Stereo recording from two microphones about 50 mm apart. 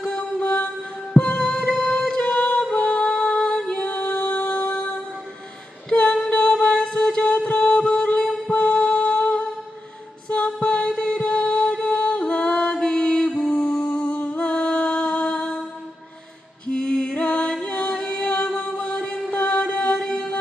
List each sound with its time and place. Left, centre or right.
0.0 s mantra: centre
1.1 s music: centre
5.9 s female singing: left
6.1 s a sound: left
6.6 s mantra: left
7.6 s a sound: centre
8.5 s music: left
11.2 s music: left
13.7 s humming: centre
14.0 s music: left
16.6 s music: centre